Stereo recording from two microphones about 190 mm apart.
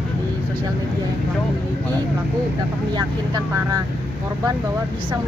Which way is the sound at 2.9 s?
20° right (ahead or behind).